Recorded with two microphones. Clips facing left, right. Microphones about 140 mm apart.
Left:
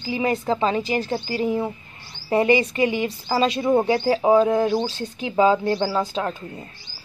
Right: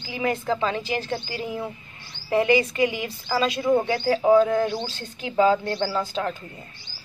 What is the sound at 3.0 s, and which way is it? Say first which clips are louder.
Speech: left 4 dB; 25° left (ahead or behind).